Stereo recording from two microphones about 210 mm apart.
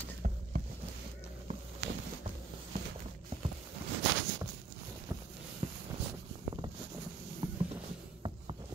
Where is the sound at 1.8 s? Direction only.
55° right (ahead or behind).